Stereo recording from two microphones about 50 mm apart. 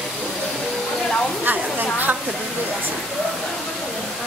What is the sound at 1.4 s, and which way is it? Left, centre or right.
Speech, right.